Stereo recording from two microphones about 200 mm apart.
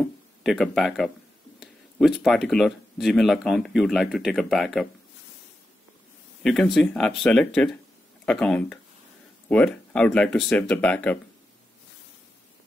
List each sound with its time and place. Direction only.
0.0 s speech: centre (ahead or behind)
6.4 s speech: centre (ahead or behind)